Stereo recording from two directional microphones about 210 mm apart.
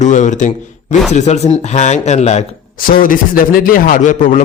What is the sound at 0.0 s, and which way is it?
A man's voice, 35° left (ahead or behind).